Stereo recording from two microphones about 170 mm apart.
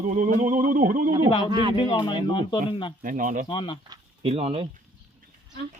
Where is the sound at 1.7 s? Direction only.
30° left (ahead or behind).